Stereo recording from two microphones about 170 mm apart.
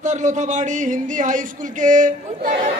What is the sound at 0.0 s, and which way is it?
Speech, 45° right (ahead or behind).